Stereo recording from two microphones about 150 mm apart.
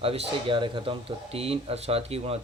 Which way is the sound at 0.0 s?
35° right (ahead or behind).